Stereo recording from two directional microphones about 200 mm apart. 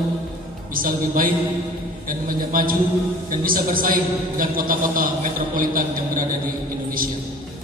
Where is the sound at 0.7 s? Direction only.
45° right (ahead or behind).